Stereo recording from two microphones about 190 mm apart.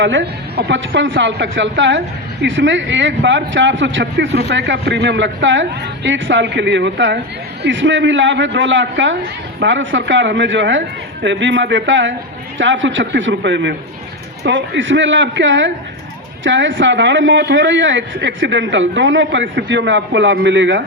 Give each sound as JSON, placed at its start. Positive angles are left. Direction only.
{"t": 0.0, "sound": "speech", "side_deg": -75}